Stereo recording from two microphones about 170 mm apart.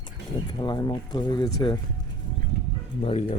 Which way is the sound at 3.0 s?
40° left (ahead or behind).